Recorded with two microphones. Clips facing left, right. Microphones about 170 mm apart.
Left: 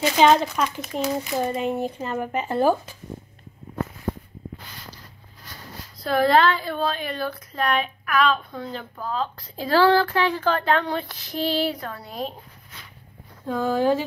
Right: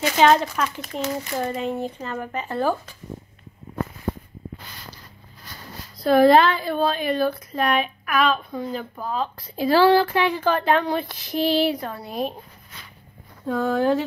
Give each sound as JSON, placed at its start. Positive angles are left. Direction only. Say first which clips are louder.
{"t": 0.2, "sound": "speech", "louder": "even", "side_deg": 5}
{"t": 6.0, "sound": "a woman's voice", "louder": "right 4 dB", "side_deg": -15}
{"t": 13.5, "sound": "speech", "louder": "right 1 dB", "side_deg": 0}